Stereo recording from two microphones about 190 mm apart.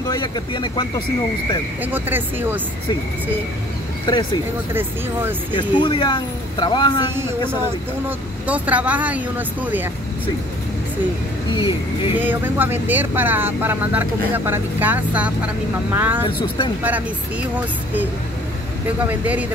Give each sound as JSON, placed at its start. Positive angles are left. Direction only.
{"t": 0.1, "sound": "speech", "side_deg": 25}
{"t": 1.8, "sound": "speech", "side_deg": -10}
{"t": 4.0, "sound": "speech", "side_deg": 25}
{"t": 5.5, "sound": "speech", "side_deg": 25}
{"t": 8.5, "sound": "speech", "side_deg": -10}
{"t": 11.5, "sound": "speech", "side_deg": 25}
{"t": 12.2, "sound": "speech", "side_deg": -10}
{"t": 19.0, "sound": "speech", "side_deg": -10}